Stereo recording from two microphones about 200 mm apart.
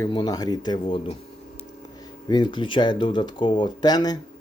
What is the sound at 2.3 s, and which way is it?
Speech, 20° left (ahead or behind).